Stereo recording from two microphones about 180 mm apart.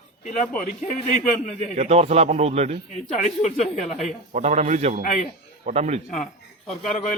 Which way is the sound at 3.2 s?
40° left (ahead or behind).